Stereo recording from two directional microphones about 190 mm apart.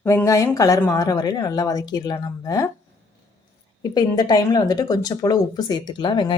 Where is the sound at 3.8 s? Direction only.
20° left (ahead or behind).